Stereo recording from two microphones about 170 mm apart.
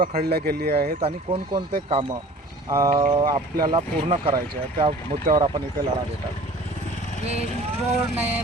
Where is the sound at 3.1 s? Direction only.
30° right (ahead or behind).